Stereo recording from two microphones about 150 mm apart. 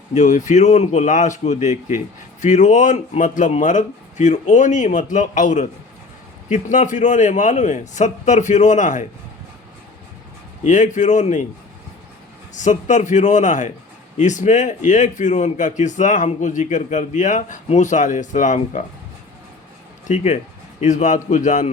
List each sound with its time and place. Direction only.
0.1 s a man's voice: 55° left (ahead or behind)
10.6 s speech: 55° left (ahead or behind)
12.5 s a man's voice: 55° left (ahead or behind)
20.1 s a man's voice: 50° left (ahead or behind)